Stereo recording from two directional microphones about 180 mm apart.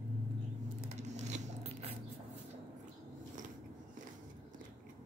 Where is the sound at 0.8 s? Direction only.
40° right (ahead or behind).